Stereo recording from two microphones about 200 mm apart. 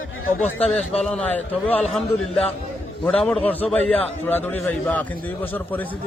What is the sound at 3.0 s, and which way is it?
A man's voice, 5° left (ahead or behind).